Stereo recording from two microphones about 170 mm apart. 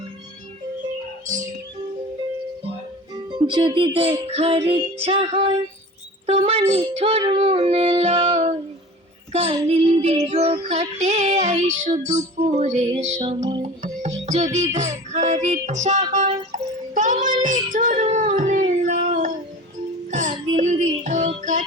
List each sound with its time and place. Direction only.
3.3 s child singing: 30° right (ahead or behind)
10.2 s music: 40° right (ahead or behind)
13.4 s music: 20° right (ahead or behind)
14.3 s music: 40° right (ahead or behind)
16.9 s child singing: 50° right (ahead or behind)
20.1 s music: 45° right (ahead or behind)